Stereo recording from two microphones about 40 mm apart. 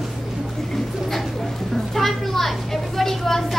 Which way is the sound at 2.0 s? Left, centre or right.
Centre.